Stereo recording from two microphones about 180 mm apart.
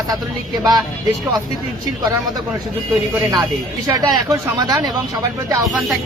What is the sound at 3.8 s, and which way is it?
Speech, 20° right (ahead or behind).